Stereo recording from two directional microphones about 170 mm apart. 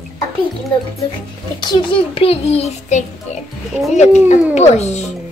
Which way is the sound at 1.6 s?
25° left (ahead or behind).